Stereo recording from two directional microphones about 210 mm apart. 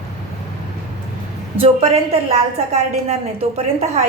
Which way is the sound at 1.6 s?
30° right (ahead or behind).